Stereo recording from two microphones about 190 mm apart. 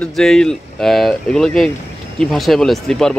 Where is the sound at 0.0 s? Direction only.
5° left (ahead or behind).